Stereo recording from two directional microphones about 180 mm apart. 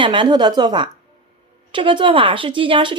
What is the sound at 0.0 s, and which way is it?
Speech, 25° right (ahead or behind).